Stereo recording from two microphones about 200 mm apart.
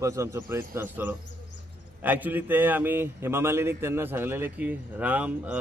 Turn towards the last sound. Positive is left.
turn(degrees=-10)  # may be behind; listen again after turning